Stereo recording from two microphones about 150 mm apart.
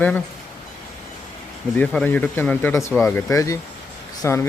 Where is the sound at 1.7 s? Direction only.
10° left (ahead or behind).